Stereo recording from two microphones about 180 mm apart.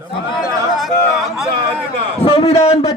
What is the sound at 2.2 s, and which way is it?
Speech, 30° left (ahead or behind).